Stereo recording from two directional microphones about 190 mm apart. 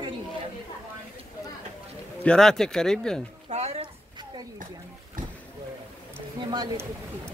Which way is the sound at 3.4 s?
35° right (ahead or behind).